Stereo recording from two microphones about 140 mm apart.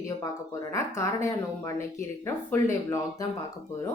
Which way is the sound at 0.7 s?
20° left (ahead or behind).